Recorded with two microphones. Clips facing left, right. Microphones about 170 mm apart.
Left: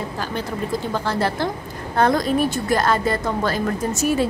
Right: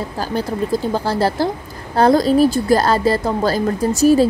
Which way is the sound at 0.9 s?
35° right (ahead or behind).